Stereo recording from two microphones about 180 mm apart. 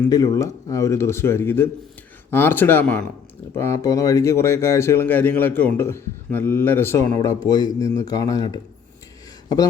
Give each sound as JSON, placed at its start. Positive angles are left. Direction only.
{"t": 0.1, "sound": "speech", "side_deg": 20}
{"t": 3.6, "sound": "speech", "side_deg": 15}